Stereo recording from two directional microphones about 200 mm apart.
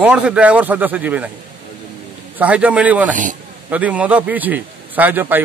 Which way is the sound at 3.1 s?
40° right (ahead or behind).